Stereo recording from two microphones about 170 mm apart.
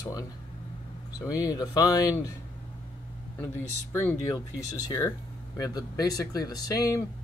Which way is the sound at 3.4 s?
15° left (ahead or behind).